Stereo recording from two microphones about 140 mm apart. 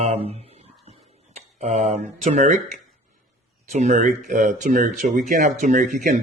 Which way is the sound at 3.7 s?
60° right (ahead or behind).